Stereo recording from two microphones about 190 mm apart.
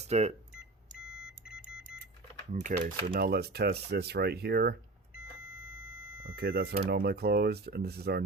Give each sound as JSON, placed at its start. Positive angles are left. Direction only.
{"t": 0.0, "sound": "speech", "side_deg": -35}
{"t": 0.9, "sound": "beep", "side_deg": -5}
{"t": 2.5, "sound": "speech", "side_deg": -40}
{"t": 5.5, "sound": "vehicle", "side_deg": -5}
{"t": 6.2, "sound": "speech", "side_deg": -55}